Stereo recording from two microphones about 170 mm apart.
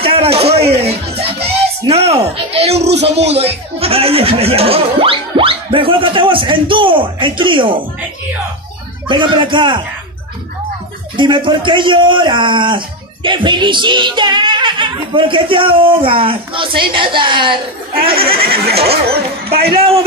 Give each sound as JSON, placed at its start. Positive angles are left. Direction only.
{"t": 0.0, "sound": "music", "side_deg": -35}
{"t": 1.9, "sound": "speech", "side_deg": -35}
{"t": 9.0, "sound": "speech", "side_deg": -30}
{"t": 11.1, "sound": "speech", "side_deg": -30}
{"t": 18.4, "sound": "speech", "side_deg": -65}
{"t": 18.8, "sound": "speech", "side_deg": -35}